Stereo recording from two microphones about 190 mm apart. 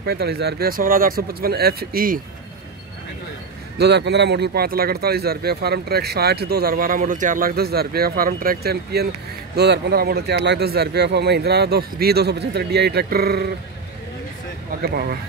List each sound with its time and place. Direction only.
0.0 s speech: 60° right (ahead or behind)
3.7 s speech: 60° right (ahead or behind)
14.8 s speech: 55° right (ahead or behind)